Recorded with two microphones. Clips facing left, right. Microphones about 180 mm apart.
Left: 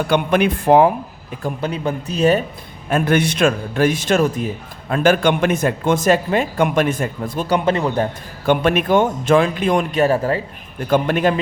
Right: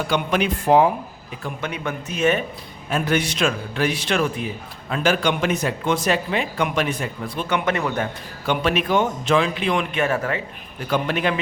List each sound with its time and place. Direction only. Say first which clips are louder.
0.1 s speech: left 6 dB; 55° left (ahead or behind)
1.4 s speech: left 6 dB; 35° left (ahead or behind)
2.9 s speech: left 5 dB; 55° left (ahead or behind); by 8.0 s 30° left (ahead or behind)
8.4 s speech: left 5 dB; 50° left (ahead or behind); by 10.4 s 30° left (ahead or behind)
10.8 s speech: left 6 dB; 50° left (ahead or behind)